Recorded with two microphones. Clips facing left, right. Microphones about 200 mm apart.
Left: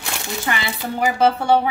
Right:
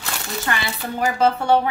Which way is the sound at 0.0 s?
15° left (ahead or behind).